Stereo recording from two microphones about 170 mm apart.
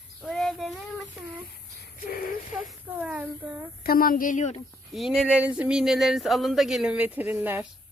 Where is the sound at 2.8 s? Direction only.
10° right (ahead or behind).